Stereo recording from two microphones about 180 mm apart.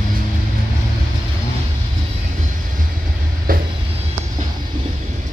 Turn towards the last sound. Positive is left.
turn(degrees=-55)  # may be behind; listen again after turning